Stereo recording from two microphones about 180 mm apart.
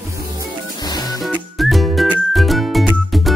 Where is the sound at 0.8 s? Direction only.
20° left (ahead or behind).